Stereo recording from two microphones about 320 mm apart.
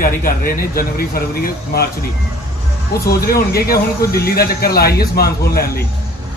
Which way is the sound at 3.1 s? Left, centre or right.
Left.